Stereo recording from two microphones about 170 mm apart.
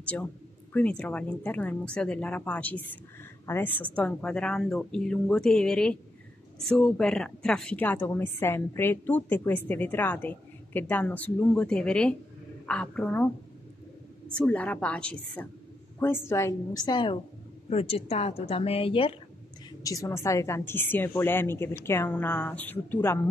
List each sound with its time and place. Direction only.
0.0 s a woman's voice: 5° left (ahead or behind)
14.3 s a woman's voice: 5° left (ahead or behind); by 19.1 s 35° left (ahead or behind)
19.8 s a woman's voice: 20° left (ahead or behind)